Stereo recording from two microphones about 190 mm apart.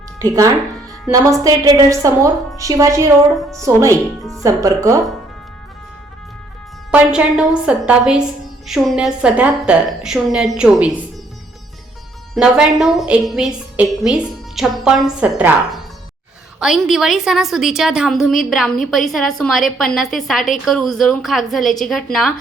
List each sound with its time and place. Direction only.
0.2 s a woman's voice: 20° right (ahead or behind)
4.2 s a woman's voice: centre (ahead or behind)
4.4 s a woman's voice: 15° right (ahead or behind)
6.9 s a woman's voice: 5° right (ahead or behind)
12.3 s a woman's voice: 5° right (ahead or behind)